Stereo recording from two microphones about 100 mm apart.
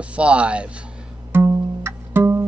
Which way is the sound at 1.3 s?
20° right (ahead or behind).